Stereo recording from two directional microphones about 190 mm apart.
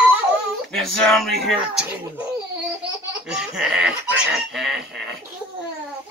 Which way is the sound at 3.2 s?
5° right (ahead or behind).